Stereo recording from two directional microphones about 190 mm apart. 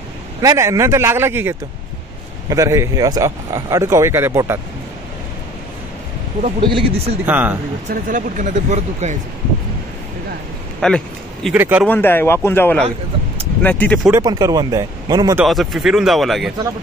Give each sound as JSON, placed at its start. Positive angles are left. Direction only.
{"t": 0.4, "sound": "speech", "side_deg": -15}
{"t": 6.4, "sound": "speech", "side_deg": -30}
{"t": 7.2, "sound": "speech", "side_deg": -10}
{"t": 7.9, "sound": "speech", "side_deg": -45}
{"t": 10.8, "sound": "speech", "side_deg": 5}
{"t": 11.5, "sound": "speech", "side_deg": -10}
{"t": 11.9, "sound": "a man's voice", "side_deg": 10}
{"t": 14.1, "sound": "speech", "side_deg": -20}
{"t": 15.4, "sound": "speech", "side_deg": 0}